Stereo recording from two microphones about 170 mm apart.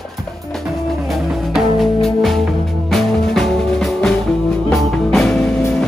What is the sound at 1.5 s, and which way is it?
Music, centre (ahead or behind).